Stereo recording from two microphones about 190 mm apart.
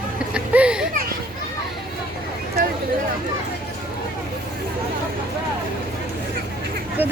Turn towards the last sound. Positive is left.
turn(degrees=-10)  # may be behind; listen again after turning